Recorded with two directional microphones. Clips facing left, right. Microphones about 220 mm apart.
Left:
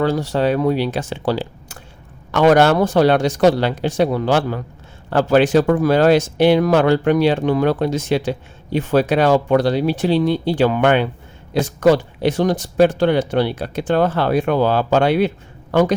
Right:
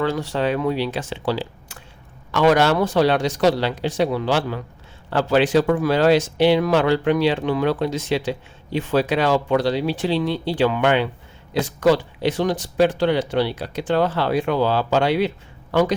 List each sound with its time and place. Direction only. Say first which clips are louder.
0.0 s speech: left 4 dB; 40° left (ahead or behind)